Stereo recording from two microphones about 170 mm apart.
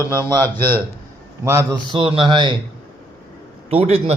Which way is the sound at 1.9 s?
30° right (ahead or behind).